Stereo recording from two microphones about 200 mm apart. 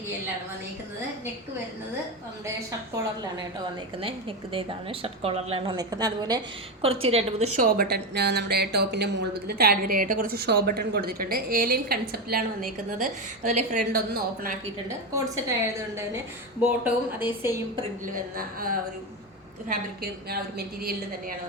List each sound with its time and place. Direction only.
4.0 s a woman's voice: 25° right (ahead or behind)
7.8 s speech: 55° right (ahead or behind)
13.4 s a woman's voice: 40° right (ahead or behind)
14.8 s a woman's voice: 15° right (ahead or behind)
16.8 s a woman's voice: 10° right (ahead or behind)
18.0 s speech: 45° right (ahead or behind)